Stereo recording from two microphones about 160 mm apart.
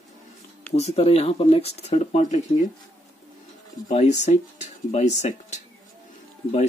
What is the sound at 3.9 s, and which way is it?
Speech, 45° left (ahead or behind).